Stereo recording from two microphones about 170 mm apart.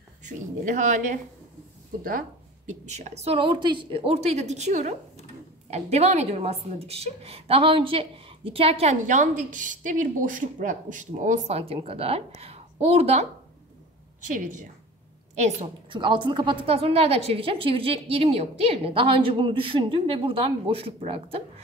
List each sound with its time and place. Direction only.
0.2 s a woman's voice: 45° right (ahead or behind)
15.9 s a woman's voice: 30° right (ahead or behind)